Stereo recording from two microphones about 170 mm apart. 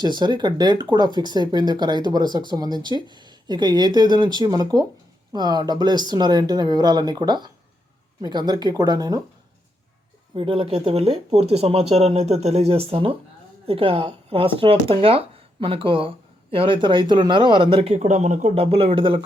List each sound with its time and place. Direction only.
0.0 s speech: 25° right (ahead or behind)
10.3 s speech: 30° right (ahead or behind)